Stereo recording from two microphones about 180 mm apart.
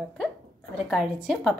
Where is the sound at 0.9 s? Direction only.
Centre (ahead or behind).